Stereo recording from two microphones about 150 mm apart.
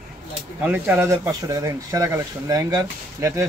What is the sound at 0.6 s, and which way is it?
Speech, 10° right (ahead or behind).